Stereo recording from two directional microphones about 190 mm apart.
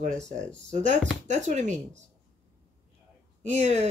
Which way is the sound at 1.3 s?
40° right (ahead or behind).